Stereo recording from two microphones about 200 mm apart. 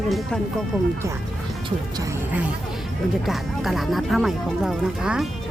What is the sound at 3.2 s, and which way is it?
Speech, centre (ahead or behind).